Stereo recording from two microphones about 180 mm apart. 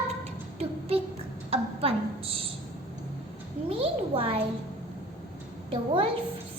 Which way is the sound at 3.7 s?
30° right (ahead or behind).